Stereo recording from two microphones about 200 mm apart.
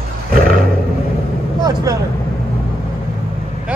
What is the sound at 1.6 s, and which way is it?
Speech, 15° right (ahead or behind).